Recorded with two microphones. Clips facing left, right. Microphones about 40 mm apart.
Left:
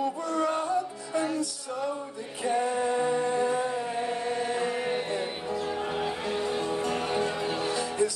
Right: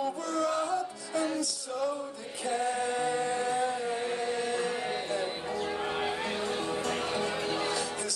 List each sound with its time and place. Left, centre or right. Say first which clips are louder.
0.3 s music: left 2 dB; left
2.4 s music: left 4 dB; left
3.2 s music: left 3 dB; centre
5.6 s music: left 1 dB; centre
6.8 s music: left 3 dB; centre